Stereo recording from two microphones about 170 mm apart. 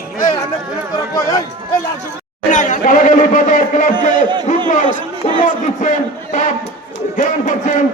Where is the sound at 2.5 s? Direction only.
45° left (ahead or behind).